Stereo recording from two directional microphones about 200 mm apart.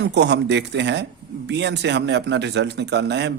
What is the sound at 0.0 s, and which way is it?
Speech, 60° right (ahead or behind).